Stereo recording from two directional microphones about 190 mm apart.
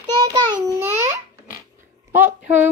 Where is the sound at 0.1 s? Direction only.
20° right (ahead or behind).